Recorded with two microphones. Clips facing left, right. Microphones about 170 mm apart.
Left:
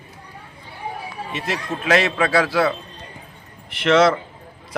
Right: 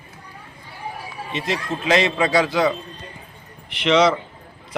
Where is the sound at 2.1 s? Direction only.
15° right (ahead or behind).